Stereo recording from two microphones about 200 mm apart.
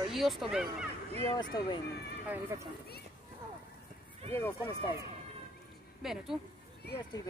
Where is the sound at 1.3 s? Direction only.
20° left (ahead or behind).